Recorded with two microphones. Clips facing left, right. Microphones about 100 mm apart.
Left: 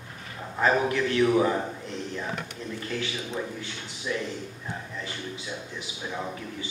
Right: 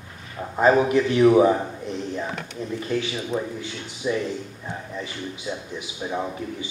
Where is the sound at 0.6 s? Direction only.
20° right (ahead or behind).